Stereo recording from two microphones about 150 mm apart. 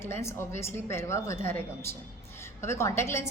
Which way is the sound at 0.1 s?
15° left (ahead or behind).